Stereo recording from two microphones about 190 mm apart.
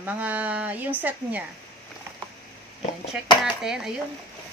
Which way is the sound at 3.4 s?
5° right (ahead or behind).